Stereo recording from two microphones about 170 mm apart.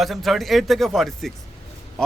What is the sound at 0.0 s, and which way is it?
Speech, centre (ahead or behind).